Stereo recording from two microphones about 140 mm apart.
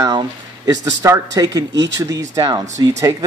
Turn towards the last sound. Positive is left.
turn(degrees=-25)  # may be behind; listen again after turning